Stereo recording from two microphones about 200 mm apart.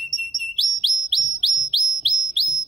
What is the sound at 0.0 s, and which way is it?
Chirp, centre (ahead or behind).